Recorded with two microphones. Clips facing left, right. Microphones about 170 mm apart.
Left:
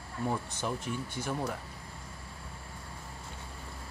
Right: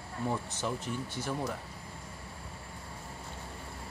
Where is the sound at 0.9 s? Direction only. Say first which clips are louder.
Left 1 dB; 40° right (ahead or behind).